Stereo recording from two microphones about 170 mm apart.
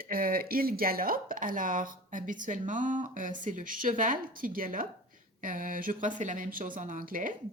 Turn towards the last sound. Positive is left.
turn(degrees=-55)  # may be behind; listen again after turning